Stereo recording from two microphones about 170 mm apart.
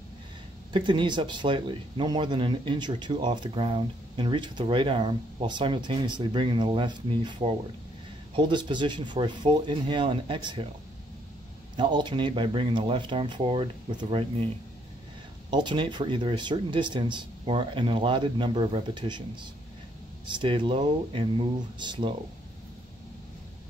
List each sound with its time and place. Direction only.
0.7 s speech: 30° right (ahead or behind)
11.7 s speech: 25° right (ahead or behind)
15.5 s speech: 30° right (ahead or behind)
20.2 s speech: 30° right (ahead or behind)